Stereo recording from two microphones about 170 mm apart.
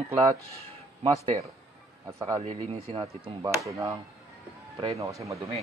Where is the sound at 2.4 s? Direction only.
35° right (ahead or behind).